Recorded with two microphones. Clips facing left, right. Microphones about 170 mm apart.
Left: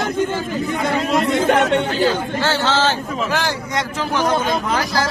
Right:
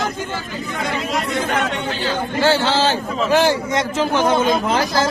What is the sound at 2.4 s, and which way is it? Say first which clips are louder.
A man's voice: right 4 dB; 15° right (ahead or behind).